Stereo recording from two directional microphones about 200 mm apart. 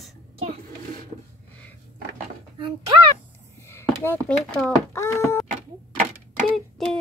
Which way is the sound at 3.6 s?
10° left (ahead or behind).